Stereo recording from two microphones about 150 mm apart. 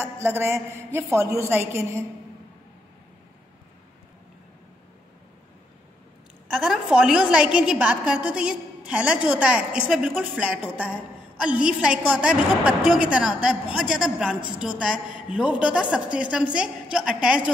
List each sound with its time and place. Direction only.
0.0 s a woman's voice: 15° right (ahead or behind)
6.5 s a woman's voice: 5° right (ahead or behind)